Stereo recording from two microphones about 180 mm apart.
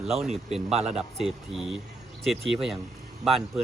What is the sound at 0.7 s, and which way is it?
Speech, 35° right (ahead or behind).